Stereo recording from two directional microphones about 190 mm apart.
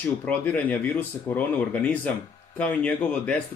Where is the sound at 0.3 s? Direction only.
10° left (ahead or behind).